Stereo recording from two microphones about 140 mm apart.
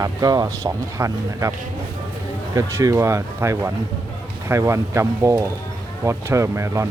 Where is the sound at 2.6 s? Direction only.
25° right (ahead or behind).